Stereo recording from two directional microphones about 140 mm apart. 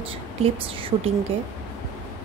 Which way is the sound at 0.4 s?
40° right (ahead or behind).